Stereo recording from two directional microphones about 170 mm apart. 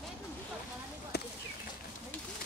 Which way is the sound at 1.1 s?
70° left (ahead or behind).